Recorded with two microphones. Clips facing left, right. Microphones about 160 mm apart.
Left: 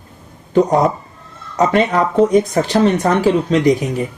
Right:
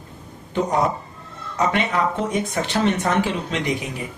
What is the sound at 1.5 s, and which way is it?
Speech, 40° left (ahead or behind).